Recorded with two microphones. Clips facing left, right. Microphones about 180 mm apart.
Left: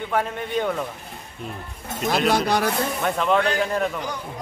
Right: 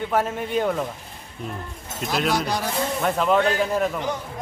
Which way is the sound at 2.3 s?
60° left (ahead or behind).